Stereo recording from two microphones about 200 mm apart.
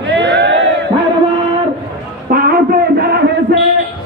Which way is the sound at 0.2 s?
60° right (ahead or behind).